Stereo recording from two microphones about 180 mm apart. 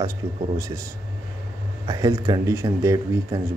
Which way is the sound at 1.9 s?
20° right (ahead or behind).